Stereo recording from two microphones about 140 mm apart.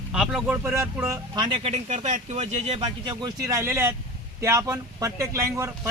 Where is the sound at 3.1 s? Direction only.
25° right (ahead or behind).